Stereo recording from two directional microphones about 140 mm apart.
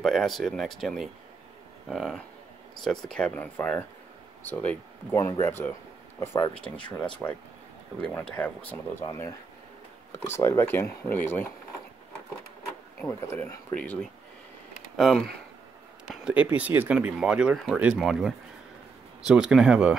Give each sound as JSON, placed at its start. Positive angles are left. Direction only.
{"t": 0.0, "sound": "speech", "side_deg": 0}
{"t": 13.0, "sound": "speech", "side_deg": 15}
{"t": 15.0, "sound": "speech", "side_deg": 0}
{"t": 16.3, "sound": "speech", "side_deg": -10}